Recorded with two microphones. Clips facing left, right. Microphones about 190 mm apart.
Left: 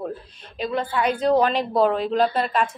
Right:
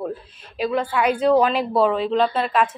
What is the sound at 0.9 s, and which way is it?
A woman's voice, 10° right (ahead or behind).